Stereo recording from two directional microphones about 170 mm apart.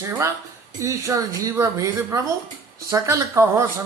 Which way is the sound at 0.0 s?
15° right (ahead or behind).